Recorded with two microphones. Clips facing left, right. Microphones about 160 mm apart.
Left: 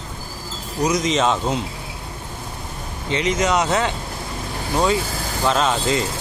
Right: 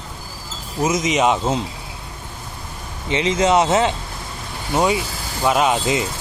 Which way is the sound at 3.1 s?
25° right (ahead or behind).